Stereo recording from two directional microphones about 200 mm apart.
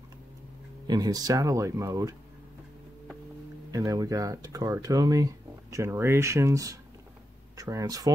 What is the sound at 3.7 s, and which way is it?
Speech, 15° right (ahead or behind).